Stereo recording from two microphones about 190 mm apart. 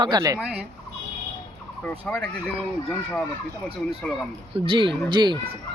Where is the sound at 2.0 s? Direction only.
5° left (ahead or behind).